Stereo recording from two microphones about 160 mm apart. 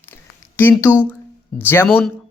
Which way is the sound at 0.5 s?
15° left (ahead or behind).